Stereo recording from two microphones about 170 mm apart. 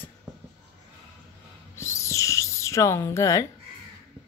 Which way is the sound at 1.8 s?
15° left (ahead or behind).